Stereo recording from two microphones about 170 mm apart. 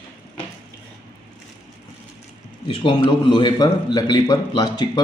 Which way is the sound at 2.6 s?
30° left (ahead or behind).